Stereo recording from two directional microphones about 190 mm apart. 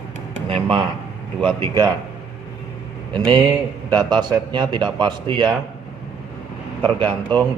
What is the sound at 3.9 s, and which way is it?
A man's voice, 25° right (ahead or behind).